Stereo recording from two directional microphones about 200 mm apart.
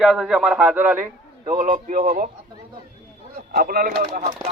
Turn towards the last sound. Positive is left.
turn(degrees=-45)  # may be behind; listen again after turning